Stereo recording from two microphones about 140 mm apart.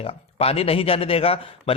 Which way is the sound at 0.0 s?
45° left (ahead or behind).